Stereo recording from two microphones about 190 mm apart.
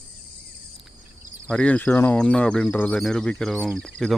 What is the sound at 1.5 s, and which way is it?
Speech, 5° left (ahead or behind).